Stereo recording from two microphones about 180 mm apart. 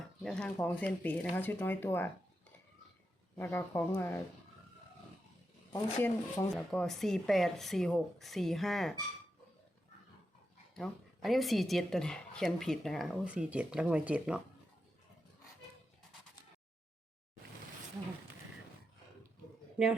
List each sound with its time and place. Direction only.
0.2 s a woman's voice: 5° left (ahead or behind)
3.3 s speech: 10° left (ahead or behind)
5.7 s speech: 15° left (ahead or behind)
6.7 s a woman's voice: centre (ahead or behind)
10.8 s a woman's voice: centre (ahead or behind)
19.8 s a woman's voice: 5° right (ahead or behind)